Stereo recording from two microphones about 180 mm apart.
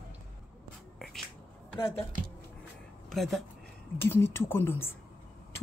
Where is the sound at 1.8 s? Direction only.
15° left (ahead or behind).